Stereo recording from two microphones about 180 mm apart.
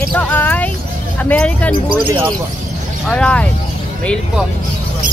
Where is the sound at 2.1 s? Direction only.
20° right (ahead or behind).